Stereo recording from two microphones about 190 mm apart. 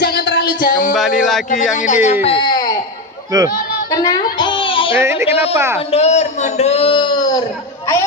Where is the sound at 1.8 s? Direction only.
40° left (ahead or behind); by 2.7 s 25° left (ahead or behind).